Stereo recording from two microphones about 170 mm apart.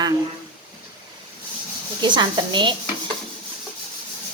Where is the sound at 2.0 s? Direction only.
25° right (ahead or behind).